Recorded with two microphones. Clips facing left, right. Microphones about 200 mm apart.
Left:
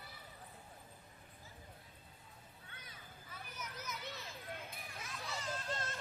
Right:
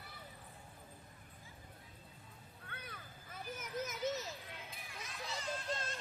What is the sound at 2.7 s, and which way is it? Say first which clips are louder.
Children playing: right 7 dB; 60° right (ahead or behind).